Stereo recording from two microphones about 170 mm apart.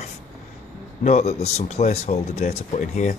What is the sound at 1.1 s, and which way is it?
Speech, 40° left (ahead or behind).